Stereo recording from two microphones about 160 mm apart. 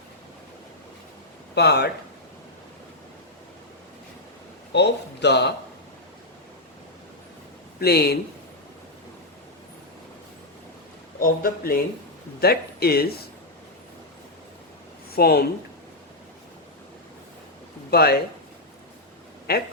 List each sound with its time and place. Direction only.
1.5 s a man's voice: 90° left
4.7 s a man's voice: 90° left
7.8 s speech: 85° left
11.2 s a man's voice: 65° left (ahead or behind)
12.4 s speech: 80° left
15.1 s speech: 75° left (ahead or behind)
17.9 s speech: 75° left (ahead or behind)
19.5 s speech: 80° left